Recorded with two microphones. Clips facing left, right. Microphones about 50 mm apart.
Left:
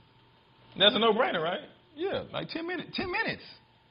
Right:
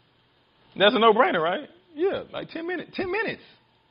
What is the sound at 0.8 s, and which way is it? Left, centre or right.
A man's voice, right.